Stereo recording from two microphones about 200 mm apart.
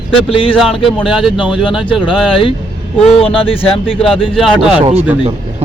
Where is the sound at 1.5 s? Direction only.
25° left (ahead or behind).